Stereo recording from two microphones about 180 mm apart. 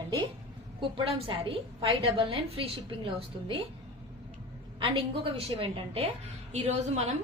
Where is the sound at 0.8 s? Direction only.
30° right (ahead or behind).